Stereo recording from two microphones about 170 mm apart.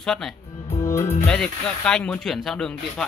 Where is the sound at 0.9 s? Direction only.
15° left (ahead or behind).